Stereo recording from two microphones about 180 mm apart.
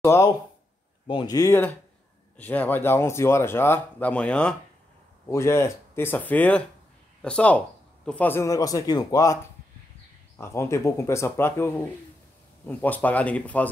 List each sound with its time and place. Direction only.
0.0 s speech: 15° left (ahead or behind)